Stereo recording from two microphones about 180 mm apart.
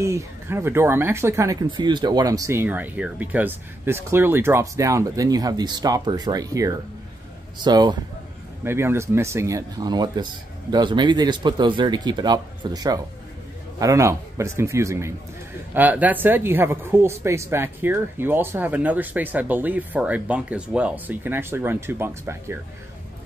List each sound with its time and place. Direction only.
0.0 s speech: 15° right (ahead or behind)
8.6 s speech: 15° right (ahead or behind)